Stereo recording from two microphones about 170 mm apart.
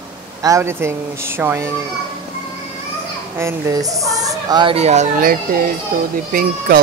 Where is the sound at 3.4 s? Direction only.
15° right (ahead or behind); by 5.0 s 40° right (ahead or behind).